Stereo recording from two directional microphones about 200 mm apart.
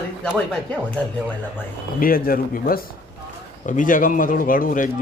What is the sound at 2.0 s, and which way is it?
Speech, 45° left (ahead or behind).